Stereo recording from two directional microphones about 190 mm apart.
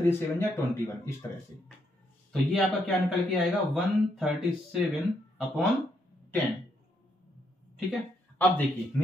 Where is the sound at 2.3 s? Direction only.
Centre (ahead or behind).